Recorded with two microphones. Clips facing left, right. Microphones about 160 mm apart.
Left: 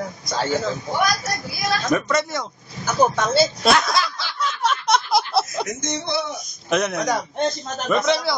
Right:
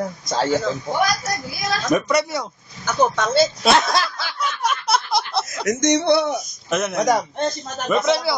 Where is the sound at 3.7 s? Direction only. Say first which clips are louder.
Right 2 dB; 30° right (ahead or behind).